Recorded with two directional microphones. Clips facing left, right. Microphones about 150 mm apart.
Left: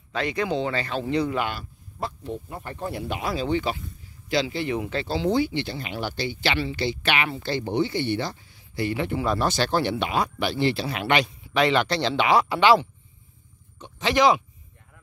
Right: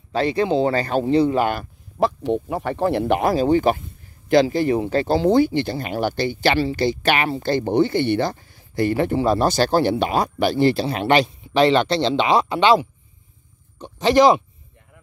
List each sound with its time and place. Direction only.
0.1 s speech: 35° right (ahead or behind)
1.0 s speech: 30° right (ahead or behind)
2.0 s speech: 90° right; by 5.0 s 40° right (ahead or behind)
5.0 s speech: 50° right (ahead or behind); by 12.8 s 20° right (ahead or behind)
13.7 s speech: 35° right (ahead or behind)